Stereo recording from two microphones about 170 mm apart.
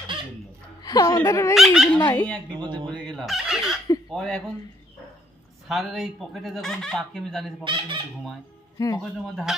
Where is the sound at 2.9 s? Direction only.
5° left (ahead or behind).